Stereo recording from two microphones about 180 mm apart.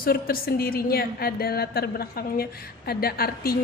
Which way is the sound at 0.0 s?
55° left (ahead or behind).